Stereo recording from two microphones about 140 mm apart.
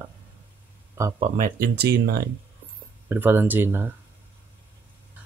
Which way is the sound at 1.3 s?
80° right.